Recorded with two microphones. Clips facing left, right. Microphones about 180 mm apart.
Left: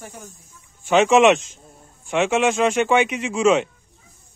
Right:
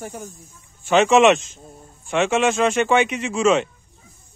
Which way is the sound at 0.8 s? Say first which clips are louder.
Even; 10° left (ahead or behind).